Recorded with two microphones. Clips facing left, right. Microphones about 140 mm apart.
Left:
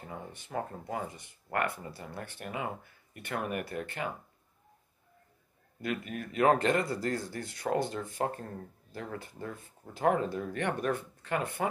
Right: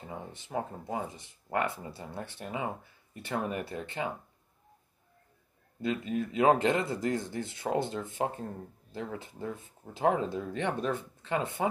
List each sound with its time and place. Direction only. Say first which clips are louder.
0.4 s speech: right 1 dB; 15° right (ahead or behind)
5.8 s speech: right 4 dB; 20° right (ahead or behind)